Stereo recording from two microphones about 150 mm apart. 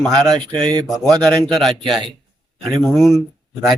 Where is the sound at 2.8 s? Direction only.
Centre (ahead or behind).